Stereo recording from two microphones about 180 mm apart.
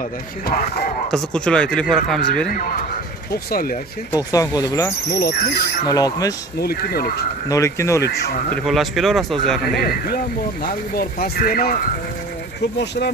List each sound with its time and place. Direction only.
1.1 s speech: 5° left (ahead or behind)
4.1 s speech: 20° left (ahead or behind)
5.2 s speech: 60° left (ahead or behind)
5.9 s speech: 20° left (ahead or behind)
6.6 s speech: 55° left (ahead or behind)
7.4 s speech: 15° left (ahead or behind)
8.6 s speech: centre (ahead or behind)
9.8 s speech: 55° left (ahead or behind)